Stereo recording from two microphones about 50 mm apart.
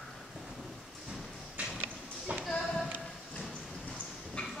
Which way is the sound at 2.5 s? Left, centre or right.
Centre.